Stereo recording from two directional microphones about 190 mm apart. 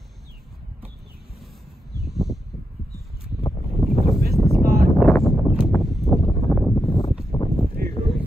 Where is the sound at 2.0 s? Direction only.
Centre (ahead or behind).